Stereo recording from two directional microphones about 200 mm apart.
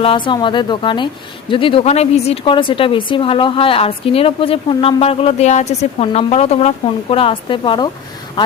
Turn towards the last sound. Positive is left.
turn(degrees=25)  # may be behind; listen again after turning